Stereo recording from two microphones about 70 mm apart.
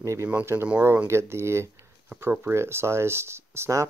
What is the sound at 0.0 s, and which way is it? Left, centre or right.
Speech, right.